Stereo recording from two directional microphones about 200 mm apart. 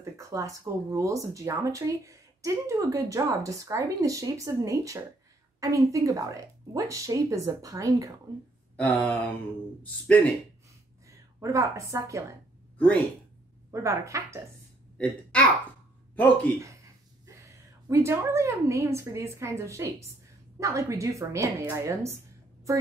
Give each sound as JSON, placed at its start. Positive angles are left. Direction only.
{"t": 0.0, "sound": "speech", "side_deg": -15}
{"t": 8.7, "sound": "a sound", "side_deg": 5}
{"t": 11.1, "sound": "a woman's voice", "side_deg": -15}
{"t": 12.7, "sound": "speech", "side_deg": 5}
{"t": 13.7, "sound": "speech", "side_deg": -15}
{"t": 15.0, "sound": "speech", "side_deg": 5}
{"t": 16.5, "sound": "a woman's voice", "side_deg": -15}